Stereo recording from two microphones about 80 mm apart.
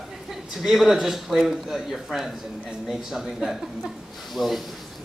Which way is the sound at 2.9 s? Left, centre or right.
Centre.